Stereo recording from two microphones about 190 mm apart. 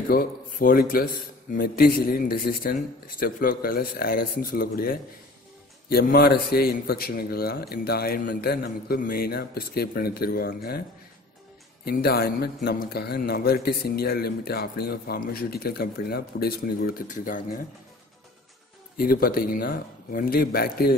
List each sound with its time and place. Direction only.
0.1 s a man's voice: 50° left (ahead or behind)
11.8 s a man's voice: 55° left (ahead or behind)
18.9 s a man's voice: 50° left (ahead or behind)